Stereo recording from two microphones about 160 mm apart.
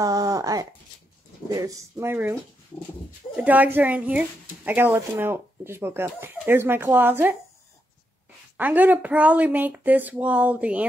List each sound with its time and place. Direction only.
0.0 s speech: 25° right (ahead or behind)
3.3 s speech: 10° right (ahead or behind)
8.5 s speech: 10° right (ahead or behind)